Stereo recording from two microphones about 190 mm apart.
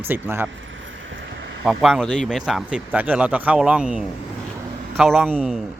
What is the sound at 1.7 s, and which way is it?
A man's voice, centre (ahead or behind).